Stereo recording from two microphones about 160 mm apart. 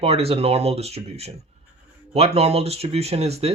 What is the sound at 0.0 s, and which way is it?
Speech, 40° right (ahead or behind).